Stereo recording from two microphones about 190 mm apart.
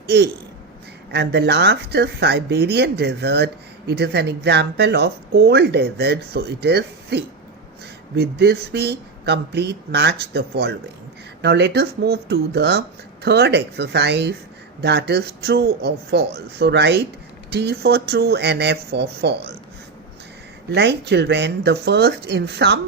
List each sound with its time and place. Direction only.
1.1 s speech: 60° right (ahead or behind)
20.7 s speech: 60° right (ahead or behind)